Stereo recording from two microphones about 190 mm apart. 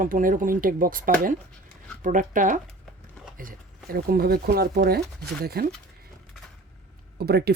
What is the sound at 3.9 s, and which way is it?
Speech, 50° right (ahead or behind).